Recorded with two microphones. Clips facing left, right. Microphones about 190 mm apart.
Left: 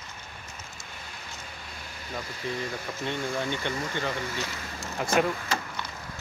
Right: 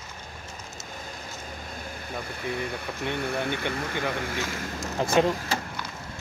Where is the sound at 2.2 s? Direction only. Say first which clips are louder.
Right 2 dB; 60° right (ahead or behind).